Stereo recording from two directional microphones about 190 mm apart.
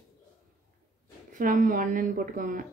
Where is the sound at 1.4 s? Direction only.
45° right (ahead or behind).